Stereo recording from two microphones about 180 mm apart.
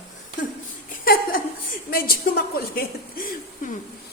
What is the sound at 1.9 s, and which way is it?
A woman's voice, 55° left (ahead or behind).